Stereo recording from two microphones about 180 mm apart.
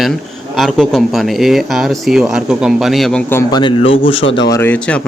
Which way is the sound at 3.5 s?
30° left (ahead or behind).